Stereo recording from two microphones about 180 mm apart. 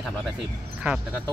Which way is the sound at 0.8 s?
10° right (ahead or behind).